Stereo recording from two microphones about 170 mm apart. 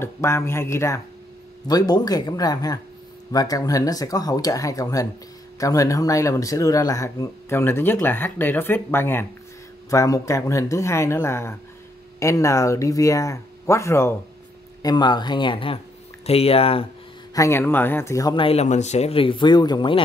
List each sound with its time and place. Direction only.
0.0 s speech: 15° left (ahead or behind); by 16.8 s 35° left (ahead or behind)
17.3 s speech: 15° left (ahead or behind)